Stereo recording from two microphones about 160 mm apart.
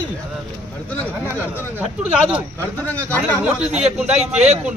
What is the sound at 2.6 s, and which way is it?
Speech, 10° left (ahead or behind).